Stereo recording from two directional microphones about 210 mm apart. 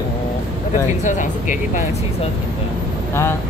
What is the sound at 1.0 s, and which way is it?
Speech, 35° left (ahead or behind).